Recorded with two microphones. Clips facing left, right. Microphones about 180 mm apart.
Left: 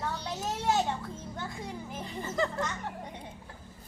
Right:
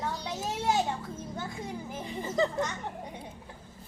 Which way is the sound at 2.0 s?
15° right (ahead or behind).